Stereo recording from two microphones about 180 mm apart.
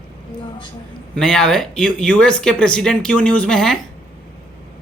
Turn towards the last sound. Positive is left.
turn(degrees=5)  # may be behind; listen again after turning